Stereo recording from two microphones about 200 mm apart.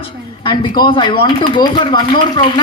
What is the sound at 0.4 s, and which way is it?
A woman's voice, 25° left (ahead or behind).